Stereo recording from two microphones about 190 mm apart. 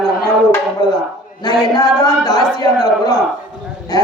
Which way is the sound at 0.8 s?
20° left (ahead or behind).